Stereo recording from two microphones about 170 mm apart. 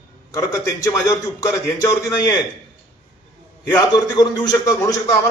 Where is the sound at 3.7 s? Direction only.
20° left (ahead or behind).